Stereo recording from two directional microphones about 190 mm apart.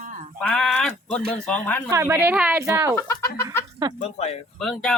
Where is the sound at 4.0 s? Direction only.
35° left (ahead or behind).